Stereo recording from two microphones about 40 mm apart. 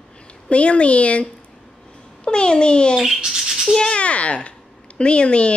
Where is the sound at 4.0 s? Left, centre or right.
Left.